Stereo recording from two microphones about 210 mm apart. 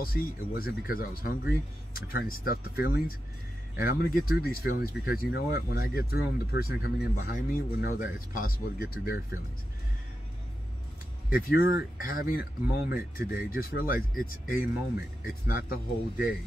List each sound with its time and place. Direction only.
0.0 s speech: 45° left (ahead or behind)
11.2 s speech: 45° left (ahead or behind)